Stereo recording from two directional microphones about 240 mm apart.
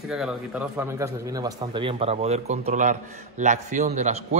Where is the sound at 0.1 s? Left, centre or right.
Centre.